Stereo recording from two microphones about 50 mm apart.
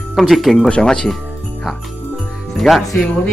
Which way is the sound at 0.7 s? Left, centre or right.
Centre.